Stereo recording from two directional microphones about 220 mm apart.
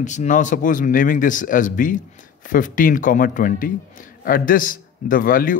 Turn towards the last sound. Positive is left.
turn(degrees=40)  # may be behind; listen again after turning